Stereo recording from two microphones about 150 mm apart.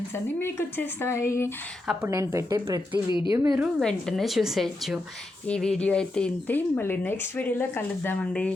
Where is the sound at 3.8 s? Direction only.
5° left (ahead or behind).